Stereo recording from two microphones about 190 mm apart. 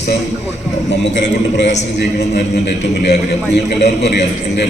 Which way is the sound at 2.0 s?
60° left (ahead or behind).